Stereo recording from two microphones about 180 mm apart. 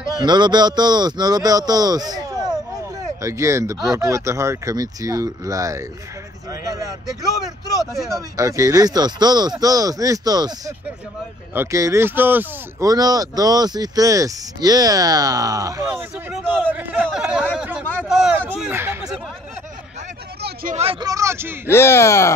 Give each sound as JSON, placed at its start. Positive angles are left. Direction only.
{"t": 0.2, "sound": "speech", "side_deg": -25}
{"t": 7.8, "sound": "speech", "side_deg": 0}
{"t": 8.1, "sound": "speech", "side_deg": -20}
{"t": 11.5, "sound": "speech", "side_deg": -15}
{"t": 12.9, "sound": "speech", "side_deg": -20}
{"t": 15.9, "sound": "speech", "side_deg": -5}
{"t": 20.7, "sound": "speech", "side_deg": -30}
{"t": 21.0, "sound": "speech", "side_deg": -15}
{"t": 21.6, "sound": "speech", "side_deg": 15}